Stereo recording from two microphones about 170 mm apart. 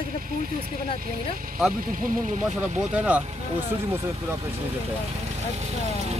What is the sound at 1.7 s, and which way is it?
Speech, 55° right (ahead or behind).